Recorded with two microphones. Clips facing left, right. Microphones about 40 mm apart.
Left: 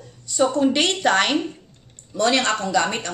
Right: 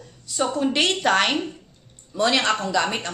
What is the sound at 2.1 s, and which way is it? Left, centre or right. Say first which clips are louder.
Speech: left 1 dB; centre.